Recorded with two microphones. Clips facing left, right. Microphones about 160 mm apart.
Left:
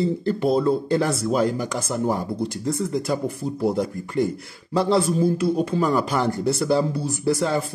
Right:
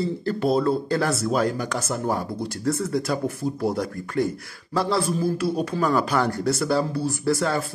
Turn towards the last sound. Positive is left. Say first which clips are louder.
# left 1 dB
turn(degrees=15)  # may be behind; listen again after turning